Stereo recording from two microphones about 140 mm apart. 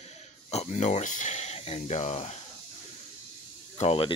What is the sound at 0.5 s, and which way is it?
Speech, 55° left (ahead or behind).